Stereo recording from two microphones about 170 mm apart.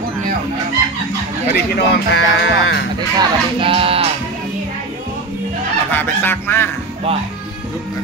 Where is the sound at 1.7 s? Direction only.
90° left.